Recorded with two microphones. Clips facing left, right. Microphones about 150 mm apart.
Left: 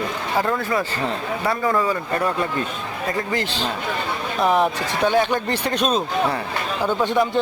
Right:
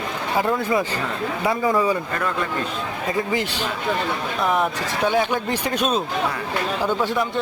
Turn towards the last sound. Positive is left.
turn(degrees=-10)  # may be behind; listen again after turning